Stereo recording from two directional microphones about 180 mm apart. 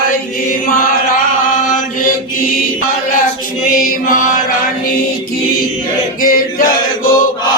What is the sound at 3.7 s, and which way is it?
Mantra, 50° left (ahead or behind).